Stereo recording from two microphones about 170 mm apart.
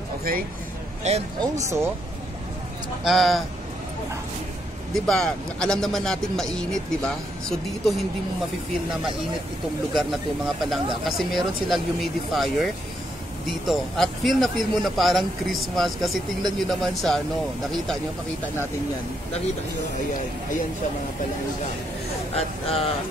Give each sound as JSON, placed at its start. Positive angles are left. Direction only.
{"t": 1.0, "sound": "speech", "side_deg": -40}
{"t": 3.0, "sound": "speech", "side_deg": 0}
{"t": 4.9, "sound": "speech", "side_deg": 5}
{"t": 9.9, "sound": "speech", "side_deg": 0}
{"t": 22.3, "sound": "speech", "side_deg": 35}